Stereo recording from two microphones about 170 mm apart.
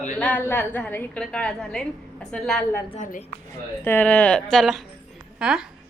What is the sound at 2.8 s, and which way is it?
Speech, 45° left (ahead or behind).